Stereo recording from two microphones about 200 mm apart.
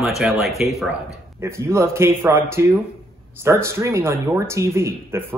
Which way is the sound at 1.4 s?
15° right (ahead or behind).